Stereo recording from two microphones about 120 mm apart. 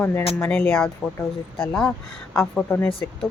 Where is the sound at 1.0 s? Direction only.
Centre (ahead or behind).